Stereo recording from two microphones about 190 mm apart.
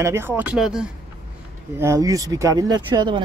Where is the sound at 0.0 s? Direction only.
15° right (ahead or behind).